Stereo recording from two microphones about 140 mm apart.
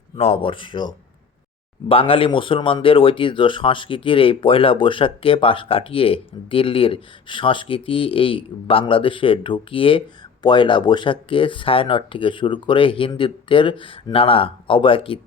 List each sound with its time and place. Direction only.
0.2 s speech: 45° left (ahead or behind)